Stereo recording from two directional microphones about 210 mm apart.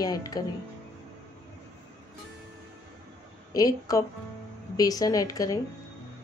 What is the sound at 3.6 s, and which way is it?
Speech, 15° left (ahead or behind).